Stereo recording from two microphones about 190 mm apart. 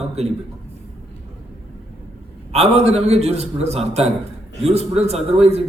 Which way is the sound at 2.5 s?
35° right (ahead or behind).